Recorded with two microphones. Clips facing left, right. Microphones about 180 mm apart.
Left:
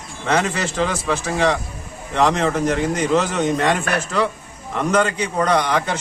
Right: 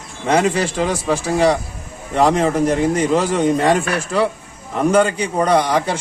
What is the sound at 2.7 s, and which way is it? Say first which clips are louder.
Speech: right 2 dB; 30° right (ahead or behind).